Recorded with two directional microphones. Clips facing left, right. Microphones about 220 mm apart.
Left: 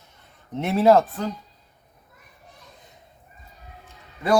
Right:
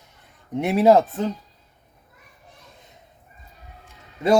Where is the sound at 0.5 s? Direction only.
15° right (ahead or behind).